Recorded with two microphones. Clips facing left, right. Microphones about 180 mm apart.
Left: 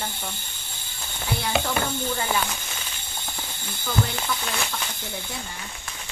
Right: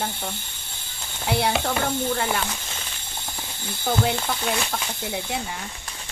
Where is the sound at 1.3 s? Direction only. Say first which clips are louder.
Right 3 dB; 65° right (ahead or behind).